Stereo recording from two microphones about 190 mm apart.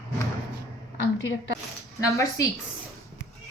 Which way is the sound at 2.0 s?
15° left (ahead or behind).